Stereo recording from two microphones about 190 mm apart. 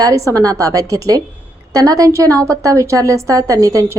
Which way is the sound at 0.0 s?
15° right (ahead or behind).